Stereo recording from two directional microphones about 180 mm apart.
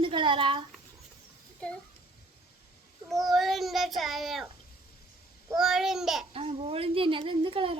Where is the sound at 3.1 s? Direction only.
Centre (ahead or behind).